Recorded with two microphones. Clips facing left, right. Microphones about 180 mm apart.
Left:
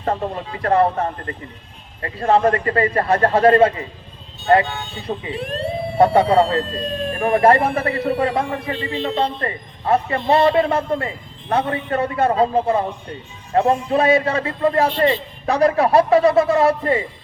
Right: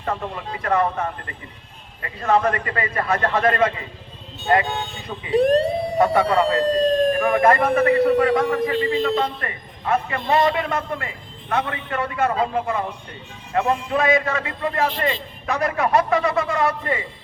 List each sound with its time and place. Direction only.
0.0 s a man's voice: 35° left (ahead or behind)
5.3 s speech: 40° right (ahead or behind)
6.0 s a man's voice: 35° left (ahead or behind)
6.7 s speech: 40° right (ahead or behind)
7.1 s a man's voice: 35° left (ahead or behind)
7.9 s speech: 40° right (ahead or behind)
8.2 s a man's voice: 30° left (ahead or behind)